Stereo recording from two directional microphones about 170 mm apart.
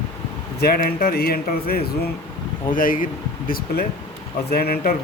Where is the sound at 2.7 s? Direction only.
55° left (ahead or behind).